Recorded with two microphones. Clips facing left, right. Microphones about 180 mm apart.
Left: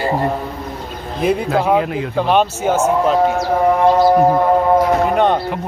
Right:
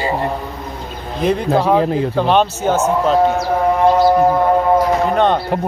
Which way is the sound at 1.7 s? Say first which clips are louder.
Right 2 dB; 30° right (ahead or behind).